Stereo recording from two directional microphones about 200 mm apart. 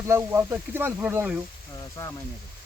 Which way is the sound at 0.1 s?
10° right (ahead or behind).